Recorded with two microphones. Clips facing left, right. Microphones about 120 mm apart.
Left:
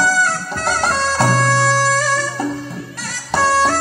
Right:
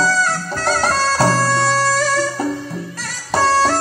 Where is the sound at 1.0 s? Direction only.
30° right (ahead or behind).